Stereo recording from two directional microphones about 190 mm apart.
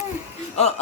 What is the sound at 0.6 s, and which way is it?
Speech, 35° left (ahead or behind).